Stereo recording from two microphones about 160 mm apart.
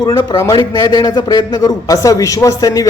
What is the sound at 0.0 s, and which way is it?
Speech, 25° left (ahead or behind).